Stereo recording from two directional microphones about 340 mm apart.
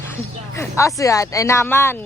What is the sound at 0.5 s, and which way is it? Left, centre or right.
Speech, centre.